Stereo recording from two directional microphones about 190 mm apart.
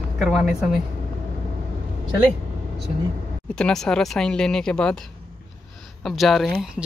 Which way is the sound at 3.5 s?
5° left (ahead or behind).